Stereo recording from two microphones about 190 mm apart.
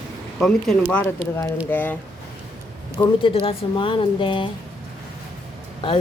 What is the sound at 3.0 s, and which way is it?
Speech, 30° left (ahead or behind).